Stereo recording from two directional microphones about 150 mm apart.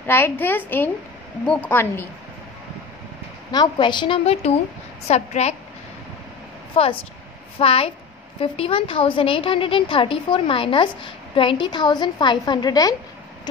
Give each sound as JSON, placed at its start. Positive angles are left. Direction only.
{"t": 0.0, "sound": "a woman's voice", "side_deg": 15}
{"t": 3.5, "sound": "a woman's voice", "side_deg": 30}
{"t": 6.8, "sound": "a woman's voice", "side_deg": 40}